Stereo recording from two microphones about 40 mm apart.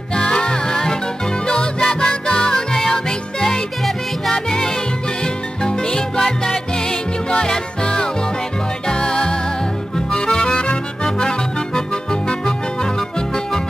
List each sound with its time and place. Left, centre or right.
0.1 s music: left
11.1 s accordion: centre